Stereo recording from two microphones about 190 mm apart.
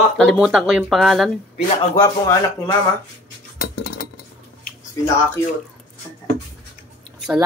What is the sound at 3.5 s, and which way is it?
Cutlery, 50° left (ahead or behind).